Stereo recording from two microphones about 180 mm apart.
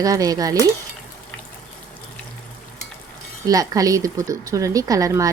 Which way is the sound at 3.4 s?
20° right (ahead or behind).